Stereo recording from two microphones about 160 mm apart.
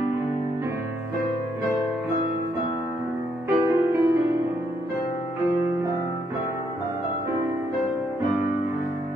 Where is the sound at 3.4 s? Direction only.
20° right (ahead or behind).